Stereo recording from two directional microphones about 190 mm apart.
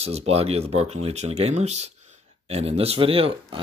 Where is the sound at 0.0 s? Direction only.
35° right (ahead or behind).